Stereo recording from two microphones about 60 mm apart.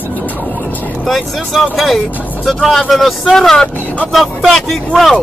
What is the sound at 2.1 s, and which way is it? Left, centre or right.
Speech, left.